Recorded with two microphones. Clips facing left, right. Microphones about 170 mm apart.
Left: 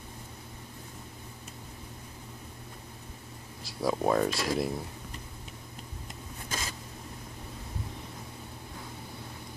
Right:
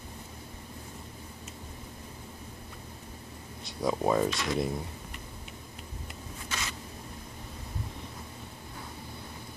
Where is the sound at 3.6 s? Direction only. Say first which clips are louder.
Even; centre (ahead or behind).